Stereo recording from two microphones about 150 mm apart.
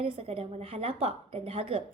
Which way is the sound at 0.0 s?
40° right (ahead or behind).